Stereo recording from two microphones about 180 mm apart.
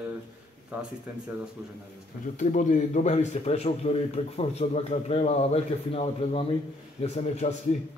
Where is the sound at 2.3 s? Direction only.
45° left (ahead or behind).